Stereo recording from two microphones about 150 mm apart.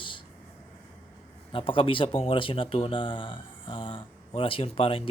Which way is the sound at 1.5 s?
35° left (ahead or behind).